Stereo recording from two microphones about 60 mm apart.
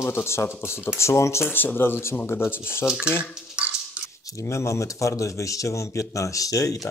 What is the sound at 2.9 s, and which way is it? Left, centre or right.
Speech, centre.